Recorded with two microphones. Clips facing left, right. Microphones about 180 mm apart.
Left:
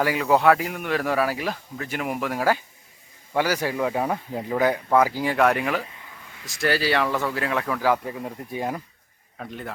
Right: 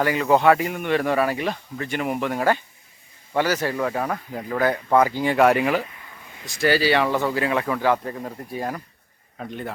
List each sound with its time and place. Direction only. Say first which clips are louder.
0.0 s speech: right 1 dB; 5° left (ahead or behind)
9.4 s speech: right 3 dB; centre (ahead or behind)